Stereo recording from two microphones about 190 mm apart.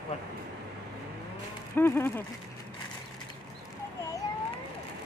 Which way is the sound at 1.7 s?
10° left (ahead or behind).